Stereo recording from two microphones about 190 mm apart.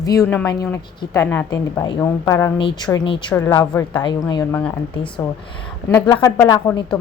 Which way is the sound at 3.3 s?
15° left (ahead or behind).